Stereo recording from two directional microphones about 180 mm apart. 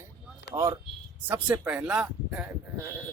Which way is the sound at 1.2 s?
10° right (ahead or behind).